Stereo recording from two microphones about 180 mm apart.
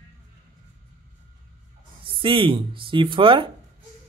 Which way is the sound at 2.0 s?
30° right (ahead or behind).